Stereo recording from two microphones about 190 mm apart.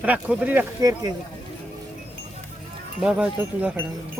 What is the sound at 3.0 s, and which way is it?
Speech, 5° right (ahead or behind).